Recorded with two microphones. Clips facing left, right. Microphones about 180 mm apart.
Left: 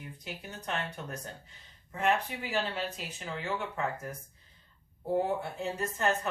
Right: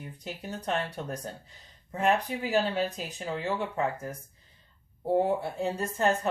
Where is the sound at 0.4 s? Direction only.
35° right (ahead or behind).